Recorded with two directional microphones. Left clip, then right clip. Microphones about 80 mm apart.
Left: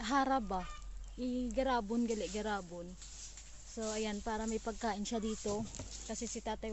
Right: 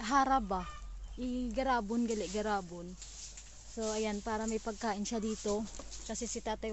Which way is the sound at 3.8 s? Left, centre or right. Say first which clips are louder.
Right 3 dB; right.